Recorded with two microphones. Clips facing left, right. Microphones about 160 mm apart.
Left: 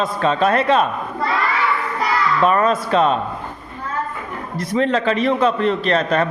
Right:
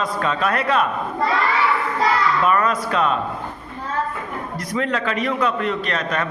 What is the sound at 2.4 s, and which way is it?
Speech, 30° left (ahead or behind).